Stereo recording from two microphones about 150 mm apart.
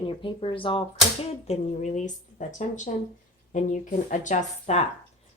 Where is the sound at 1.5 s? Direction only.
50° left (ahead or behind).